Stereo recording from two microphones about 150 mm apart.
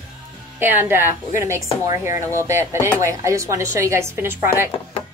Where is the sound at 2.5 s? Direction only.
15° right (ahead or behind).